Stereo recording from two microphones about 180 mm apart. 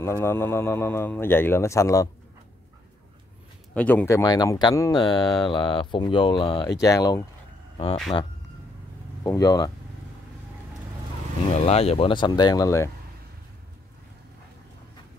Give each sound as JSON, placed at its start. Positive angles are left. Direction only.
{"t": 0.0, "sound": "speech", "side_deg": 15}
{"t": 3.7, "sound": "speech", "side_deg": 10}
{"t": 7.7, "sound": "speech", "side_deg": 30}
{"t": 9.2, "sound": "speech", "side_deg": 20}
{"t": 11.5, "sound": "speech", "side_deg": 35}